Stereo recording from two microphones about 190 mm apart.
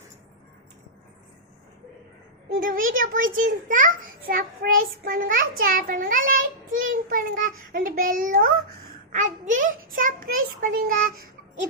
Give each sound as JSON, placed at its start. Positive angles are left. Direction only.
{"t": 2.6, "sound": "a child's voice", "side_deg": -45}